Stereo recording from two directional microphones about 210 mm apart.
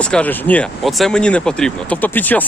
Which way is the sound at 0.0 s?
5° left (ahead or behind).